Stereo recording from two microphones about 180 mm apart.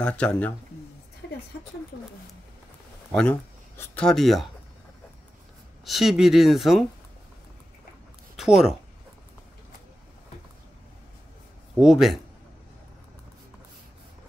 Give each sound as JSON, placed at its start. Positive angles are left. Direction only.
{"t": 0.0, "sound": "speech", "side_deg": 5}
{"t": 3.1, "sound": "speech", "side_deg": 10}
{"t": 5.9, "sound": "speech", "side_deg": 0}
{"t": 8.4, "sound": "speech", "side_deg": 0}
{"t": 11.8, "sound": "speech", "side_deg": 0}